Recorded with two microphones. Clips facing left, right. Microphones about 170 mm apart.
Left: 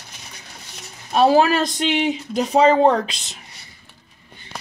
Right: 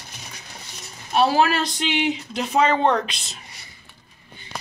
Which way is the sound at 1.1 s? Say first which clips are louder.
Left 4 dB; 40° left (ahead or behind).